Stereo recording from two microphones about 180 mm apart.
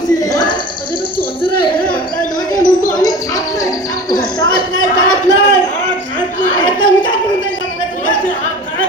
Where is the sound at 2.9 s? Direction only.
20° left (ahead or behind).